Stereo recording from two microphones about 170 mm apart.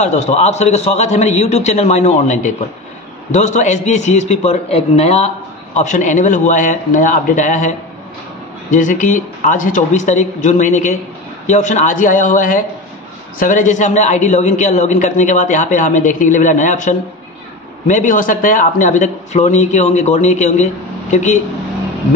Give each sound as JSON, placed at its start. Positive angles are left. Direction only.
{"t": 0.0, "sound": "a man's voice", "side_deg": 40}